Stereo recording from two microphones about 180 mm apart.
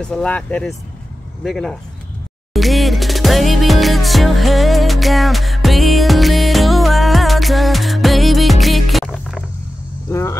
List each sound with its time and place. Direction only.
0.0 s speech: 5° left (ahead or behind)
2.5 s music: centre (ahead or behind)
10.0 s vehicle: 15° left (ahead or behind)